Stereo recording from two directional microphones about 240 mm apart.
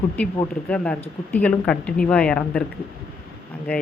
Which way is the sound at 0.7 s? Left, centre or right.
Centre.